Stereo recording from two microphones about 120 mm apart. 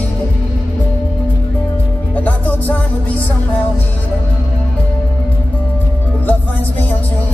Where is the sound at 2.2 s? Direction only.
15° left (ahead or behind).